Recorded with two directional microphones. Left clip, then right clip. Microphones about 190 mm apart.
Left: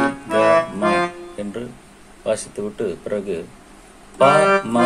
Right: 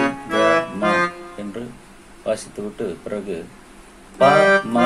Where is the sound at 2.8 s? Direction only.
20° left (ahead or behind).